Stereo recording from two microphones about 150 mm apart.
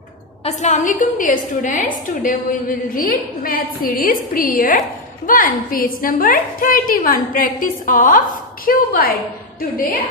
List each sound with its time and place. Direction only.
0.5 s a woman's voice: 50° left (ahead or behind)
2.9 s a woman's voice: 70° left (ahead or behind)